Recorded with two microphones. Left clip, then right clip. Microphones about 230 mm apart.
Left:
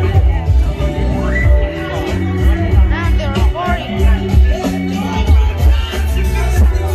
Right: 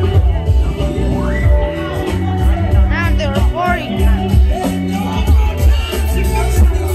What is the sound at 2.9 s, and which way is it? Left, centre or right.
Music, centre.